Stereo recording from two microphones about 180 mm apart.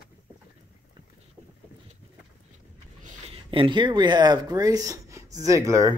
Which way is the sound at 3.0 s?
30° right (ahead or behind).